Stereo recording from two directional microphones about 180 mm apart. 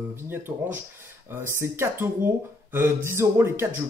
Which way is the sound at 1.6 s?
15° right (ahead or behind).